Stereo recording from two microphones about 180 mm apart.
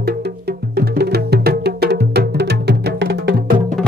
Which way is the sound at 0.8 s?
65° right (ahead or behind).